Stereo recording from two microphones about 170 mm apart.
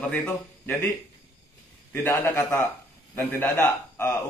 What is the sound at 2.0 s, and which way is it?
A man's voice, 15° left (ahead or behind).